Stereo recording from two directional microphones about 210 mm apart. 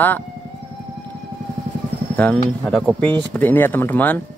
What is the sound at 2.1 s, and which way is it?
Speech, 5° left (ahead or behind).